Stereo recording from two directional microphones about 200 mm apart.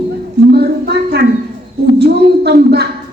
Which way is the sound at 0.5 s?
55° right (ahead or behind).